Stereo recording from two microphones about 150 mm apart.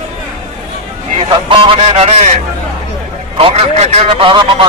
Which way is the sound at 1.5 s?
35° right (ahead or behind).